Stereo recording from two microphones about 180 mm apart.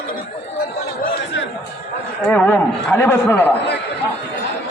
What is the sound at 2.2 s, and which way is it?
Speech, 5° left (ahead or behind).